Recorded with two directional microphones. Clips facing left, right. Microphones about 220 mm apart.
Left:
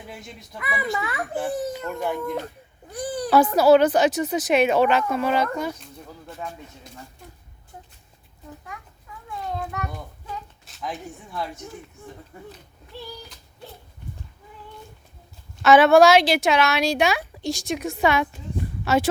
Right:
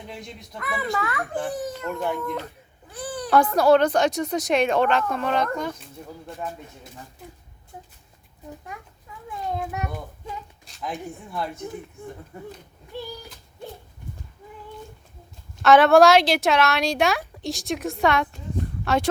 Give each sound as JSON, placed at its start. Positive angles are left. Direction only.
{"t": 0.1, "sound": "speech", "side_deg": 0}
{"t": 0.9, "sound": "a child's voice", "side_deg": 15}
{"t": 10.7, "sound": "speech", "side_deg": 0}
{"t": 15.6, "sound": "speech", "side_deg": 0}